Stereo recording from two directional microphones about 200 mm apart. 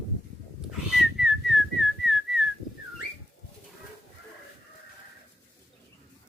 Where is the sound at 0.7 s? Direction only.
Centre (ahead or behind).